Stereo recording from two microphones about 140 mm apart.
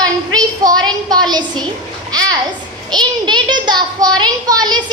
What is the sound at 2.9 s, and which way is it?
A child's voice, 30° right (ahead or behind).